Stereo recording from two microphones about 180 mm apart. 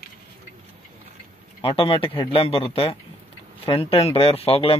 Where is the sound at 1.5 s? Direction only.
30° left (ahead or behind).